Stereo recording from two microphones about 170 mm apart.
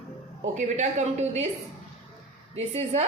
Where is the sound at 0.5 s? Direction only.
45° right (ahead or behind).